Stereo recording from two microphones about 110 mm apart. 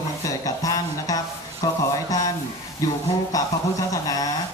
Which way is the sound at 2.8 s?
30° left (ahead or behind).